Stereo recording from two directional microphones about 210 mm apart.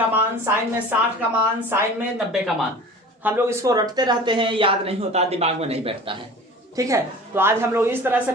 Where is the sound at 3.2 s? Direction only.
10° right (ahead or behind).